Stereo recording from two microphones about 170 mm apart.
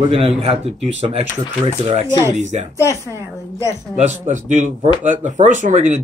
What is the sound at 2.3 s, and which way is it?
Speech, 45° right (ahead or behind).